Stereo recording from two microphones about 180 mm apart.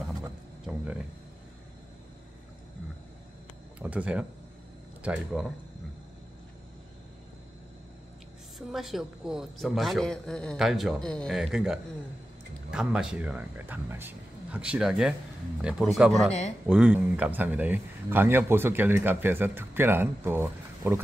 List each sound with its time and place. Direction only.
0.7 s a sound: 5° right (ahead or behind)
3.8 s a man's voice: 5° right (ahead or behind)
8.5 s a man's voice: centre (ahead or behind)